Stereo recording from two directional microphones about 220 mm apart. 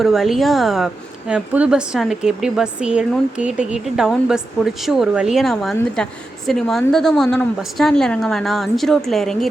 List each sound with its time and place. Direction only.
0.0 s a woman's voice: centre (ahead or behind)